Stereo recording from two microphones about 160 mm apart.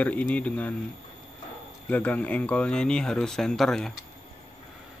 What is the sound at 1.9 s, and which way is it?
Speech, 10° left (ahead or behind).